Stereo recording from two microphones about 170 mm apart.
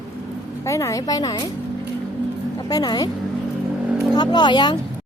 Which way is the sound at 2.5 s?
20° left (ahead or behind).